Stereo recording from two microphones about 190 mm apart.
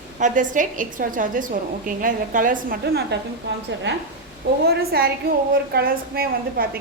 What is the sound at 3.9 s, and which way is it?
Speech, 65° right (ahead or behind).